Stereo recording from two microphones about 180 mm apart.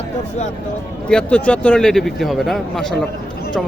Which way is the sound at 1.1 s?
5° left (ahead or behind).